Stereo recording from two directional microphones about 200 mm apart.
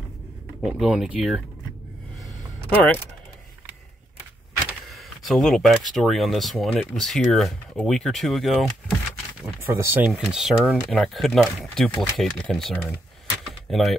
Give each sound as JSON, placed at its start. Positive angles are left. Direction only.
{"t": 0.6, "sound": "speech", "side_deg": 0}
{"t": 4.8, "sound": "speech", "side_deg": 0}
{"t": 9.6, "sound": "speech", "side_deg": -10}
{"t": 13.5, "sound": "door", "side_deg": 0}